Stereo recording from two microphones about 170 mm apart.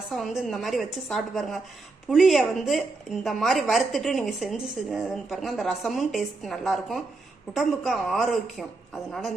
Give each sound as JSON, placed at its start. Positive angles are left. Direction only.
{"t": 0.1, "sound": "a woman's voice", "side_deg": 0}